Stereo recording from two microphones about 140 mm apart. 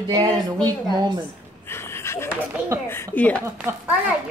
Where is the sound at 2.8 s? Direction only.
15° left (ahead or behind).